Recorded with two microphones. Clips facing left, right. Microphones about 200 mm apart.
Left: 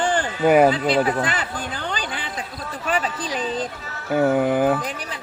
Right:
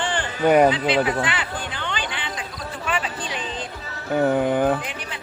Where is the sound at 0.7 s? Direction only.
40° left (ahead or behind).